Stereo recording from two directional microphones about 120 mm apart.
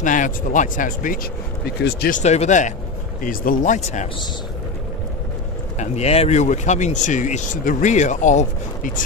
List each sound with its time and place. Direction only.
0.0 s speech: 90° left
2.1 s speech: 70° left (ahead or behind); by 4.1 s 90° left
5.8 s speech: 60° left (ahead or behind); by 9.0 s 90° left